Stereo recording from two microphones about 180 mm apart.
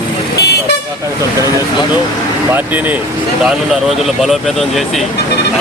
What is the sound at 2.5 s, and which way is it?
Speech, 10° right (ahead or behind).